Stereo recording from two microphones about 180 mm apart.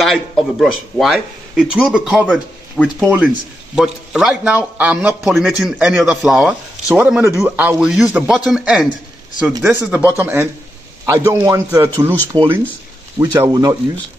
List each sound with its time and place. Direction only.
0.0 s a man's voice: centre (ahead or behind); by 13.7 s 20° right (ahead or behind)